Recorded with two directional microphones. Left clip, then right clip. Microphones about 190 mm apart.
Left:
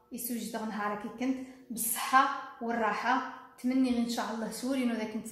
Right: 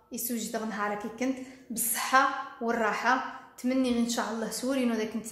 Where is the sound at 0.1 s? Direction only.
20° right (ahead or behind).